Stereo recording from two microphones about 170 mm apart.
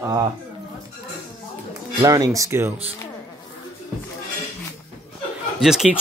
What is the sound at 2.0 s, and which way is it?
Speech, 20° right (ahead or behind).